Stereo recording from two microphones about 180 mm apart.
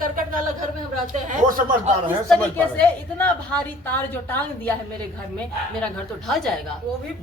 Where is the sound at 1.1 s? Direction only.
45° right (ahead or behind).